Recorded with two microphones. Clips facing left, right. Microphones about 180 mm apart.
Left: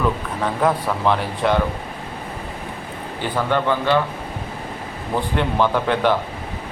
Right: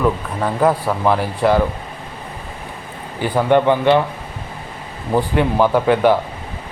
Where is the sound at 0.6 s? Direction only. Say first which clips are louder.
Right 3 dB; 5° right (ahead or behind).